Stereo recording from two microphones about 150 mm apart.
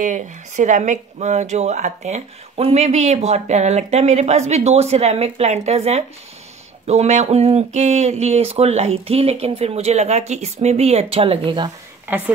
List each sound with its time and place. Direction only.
0.0 s speech: 55° right (ahead or behind); by 11.7 s 30° right (ahead or behind)
12.1 s a woman's voice: 15° right (ahead or behind)